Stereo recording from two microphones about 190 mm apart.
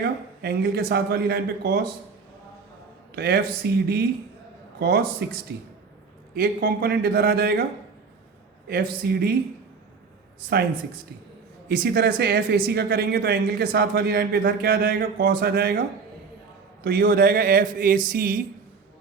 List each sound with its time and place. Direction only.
0.4 s speech: 55° right (ahead or behind)
3.2 s speech: 55° right (ahead or behind)
9.0 s speech: 55° right (ahead or behind)
11.7 s speech: 55° right (ahead or behind)
16.8 s speech: 60° right (ahead or behind)